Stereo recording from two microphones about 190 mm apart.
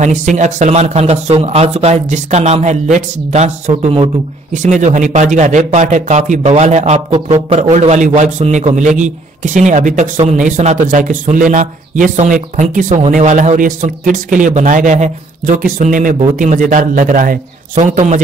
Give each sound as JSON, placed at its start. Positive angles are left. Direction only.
{"t": 0.0, "sound": "a man's voice", "side_deg": -40}